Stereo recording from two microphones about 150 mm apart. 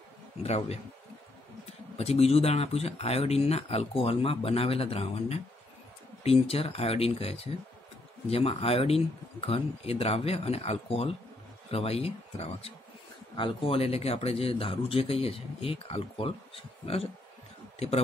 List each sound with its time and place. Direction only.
0.4 s speech: 40° left (ahead or behind)
2.0 s speech: 45° left (ahead or behind)